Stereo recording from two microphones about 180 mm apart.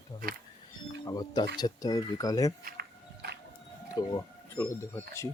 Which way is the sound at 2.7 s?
60° right (ahead or behind).